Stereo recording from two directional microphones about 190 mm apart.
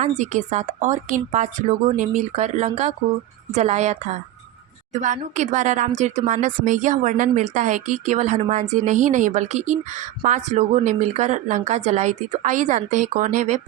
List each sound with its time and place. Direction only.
0.2 s speech: 40° right (ahead or behind)